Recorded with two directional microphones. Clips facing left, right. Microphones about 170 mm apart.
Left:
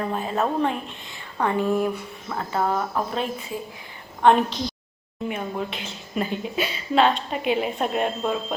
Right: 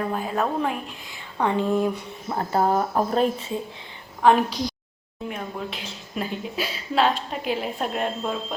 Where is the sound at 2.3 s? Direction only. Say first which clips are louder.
Right 3 dB; 35° right (ahead or behind).